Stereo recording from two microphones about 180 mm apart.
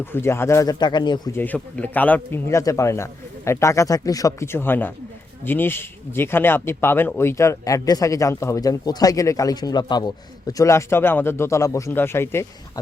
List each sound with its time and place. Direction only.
0.0 s speech: 15° left (ahead or behind)
1.4 s speech: 10° left (ahead or behind)